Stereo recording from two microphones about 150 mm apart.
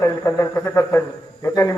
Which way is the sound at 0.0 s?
20° left (ahead or behind).